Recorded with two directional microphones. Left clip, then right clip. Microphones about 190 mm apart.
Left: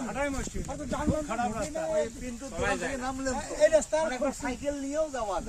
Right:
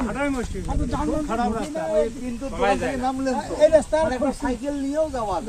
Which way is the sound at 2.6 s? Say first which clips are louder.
Right 9 dB; 70° left (ahead or behind).